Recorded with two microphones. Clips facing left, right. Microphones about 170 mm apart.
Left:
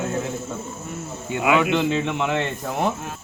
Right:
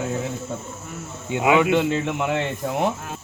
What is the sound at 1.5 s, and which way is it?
Speech, 10° right (ahead or behind).